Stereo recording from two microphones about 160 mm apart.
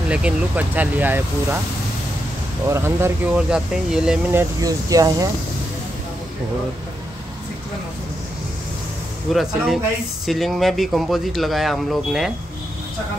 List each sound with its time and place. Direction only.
0.1 s speech: 10° right (ahead or behind)
2.7 s speech: 15° right (ahead or behind)
3.3 s speech: 5° right (ahead or behind)
4.3 s speech: 20° right (ahead or behind)
9.3 s speech: centre (ahead or behind)